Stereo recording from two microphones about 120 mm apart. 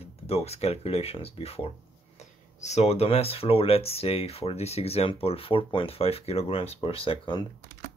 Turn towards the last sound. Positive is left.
turn(degrees=45)  # may be behind; listen again after turning